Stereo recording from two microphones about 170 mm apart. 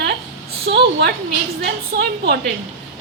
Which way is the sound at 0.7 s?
90° right.